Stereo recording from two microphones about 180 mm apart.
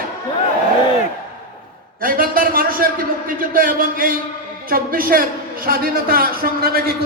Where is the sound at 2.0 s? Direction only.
50° right (ahead or behind).